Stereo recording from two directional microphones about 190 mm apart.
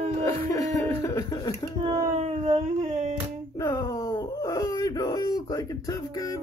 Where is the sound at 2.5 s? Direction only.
30° right (ahead or behind).